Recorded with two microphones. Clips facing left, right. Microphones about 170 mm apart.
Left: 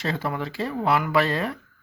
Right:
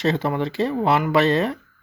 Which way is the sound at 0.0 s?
25° right (ahead or behind).